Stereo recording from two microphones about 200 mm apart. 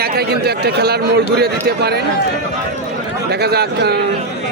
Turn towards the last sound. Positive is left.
turn(degrees=-55)  # may be behind; listen again after turning